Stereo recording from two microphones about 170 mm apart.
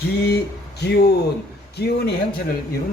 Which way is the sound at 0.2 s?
70° left (ahead or behind).